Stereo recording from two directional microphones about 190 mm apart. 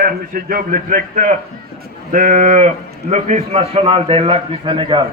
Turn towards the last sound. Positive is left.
turn(degrees=-25)  # may be behind; listen again after turning